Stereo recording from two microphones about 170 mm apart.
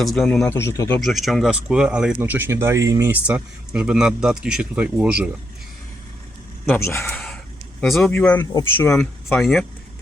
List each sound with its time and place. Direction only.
0.0 s speech: centre (ahead or behind)
0.9 s speech: centre (ahead or behind)
6.7 s speech: 15° left (ahead or behind)
7.8 s speech: centre (ahead or behind)
8.9 s speech: centre (ahead or behind)